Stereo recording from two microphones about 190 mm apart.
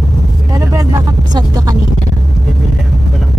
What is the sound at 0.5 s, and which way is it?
Vehicle, 15° right (ahead or behind).